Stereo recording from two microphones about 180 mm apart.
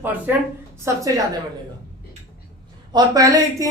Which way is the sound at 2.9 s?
20° right (ahead or behind).